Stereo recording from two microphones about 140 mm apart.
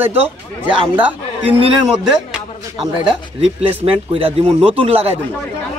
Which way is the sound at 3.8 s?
40° right (ahead or behind).